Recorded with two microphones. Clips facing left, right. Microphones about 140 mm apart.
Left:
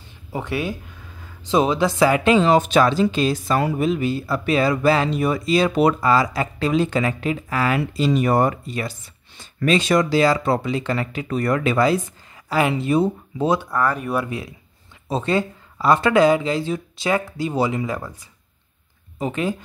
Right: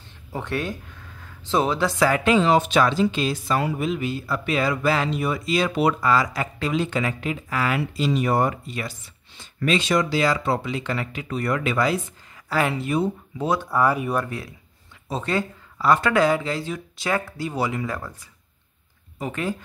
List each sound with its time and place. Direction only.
0.3 s speech: 10° left (ahead or behind)
2.4 s speech: 45° left (ahead or behind)
12.4 s speech: 15° left (ahead or behind)
12.8 s speech: 25° left (ahead or behind)
13.7 s speech: 10° right (ahead or behind)
14.1 s speech: 15° left (ahead or behind)
15.0 s speech: 25° left (ahead or behind)
19.1 s speech: 20° left (ahead or behind)